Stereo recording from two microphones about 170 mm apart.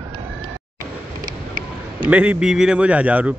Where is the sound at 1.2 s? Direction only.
55° right (ahead or behind).